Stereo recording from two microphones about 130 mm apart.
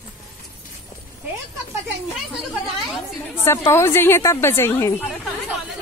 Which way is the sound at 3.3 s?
20° left (ahead or behind).